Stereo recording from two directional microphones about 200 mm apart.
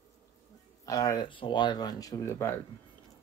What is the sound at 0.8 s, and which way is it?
Speech, 20° left (ahead or behind).